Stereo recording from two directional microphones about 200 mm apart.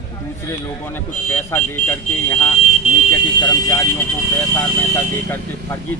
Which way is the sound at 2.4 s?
30° left (ahead or behind).